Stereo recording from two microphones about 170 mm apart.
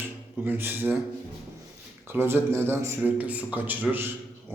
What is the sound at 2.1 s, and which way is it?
A man's voice, 10° right (ahead or behind).